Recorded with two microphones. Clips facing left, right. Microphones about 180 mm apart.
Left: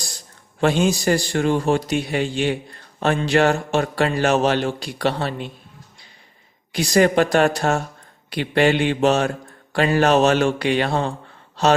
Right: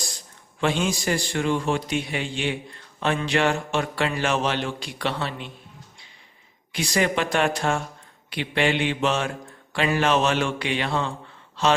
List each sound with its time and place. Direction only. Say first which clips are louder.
0.6 s a man's voice: left 6 dB; 40° left (ahead or behind)
6.7 s a man's voice: left 7 dB; 40° left (ahead or behind)